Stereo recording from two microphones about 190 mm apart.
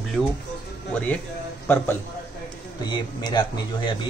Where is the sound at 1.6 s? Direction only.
10° left (ahead or behind).